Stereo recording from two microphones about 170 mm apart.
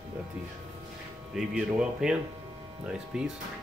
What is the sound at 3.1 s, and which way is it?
Speech, 5° right (ahead or behind).